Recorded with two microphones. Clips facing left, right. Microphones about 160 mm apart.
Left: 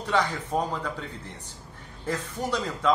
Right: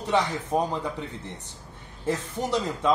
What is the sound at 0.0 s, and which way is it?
A man's voice, 20° right (ahead or behind).